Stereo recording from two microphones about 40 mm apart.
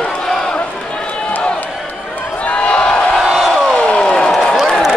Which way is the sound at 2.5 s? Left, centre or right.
Left.